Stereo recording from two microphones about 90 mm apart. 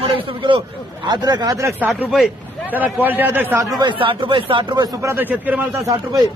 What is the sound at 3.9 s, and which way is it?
Speech, 75° right (ahead or behind).